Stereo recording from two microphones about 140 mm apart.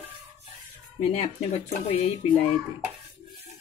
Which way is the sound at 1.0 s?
45° left (ahead or behind).